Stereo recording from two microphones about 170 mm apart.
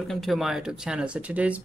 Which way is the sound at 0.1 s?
Centre (ahead or behind).